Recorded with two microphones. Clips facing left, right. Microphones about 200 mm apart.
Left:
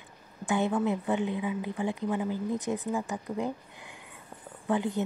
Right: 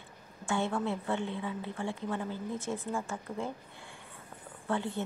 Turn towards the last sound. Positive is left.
turn(degrees=15)  # may be behind; listen again after turning